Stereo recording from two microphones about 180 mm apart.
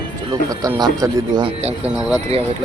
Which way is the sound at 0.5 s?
20° right (ahead or behind).